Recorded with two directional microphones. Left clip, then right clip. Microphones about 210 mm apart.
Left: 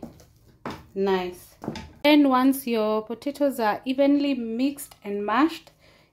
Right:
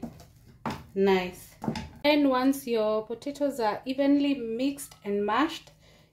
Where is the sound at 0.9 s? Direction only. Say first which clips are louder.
Even; 20° left (ahead or behind).